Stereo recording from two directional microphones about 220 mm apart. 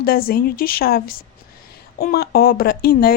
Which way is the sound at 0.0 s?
45° left (ahead or behind).